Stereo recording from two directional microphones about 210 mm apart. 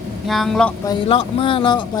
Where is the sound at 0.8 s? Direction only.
25° left (ahead or behind).